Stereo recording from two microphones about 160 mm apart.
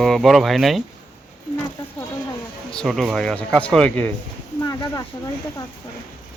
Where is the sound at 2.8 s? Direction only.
Centre (ahead or behind).